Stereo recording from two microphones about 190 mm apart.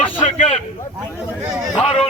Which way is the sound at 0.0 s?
30° left (ahead or behind).